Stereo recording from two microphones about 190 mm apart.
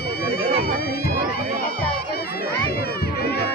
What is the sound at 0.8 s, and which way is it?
Crowd, 55° left (ahead or behind).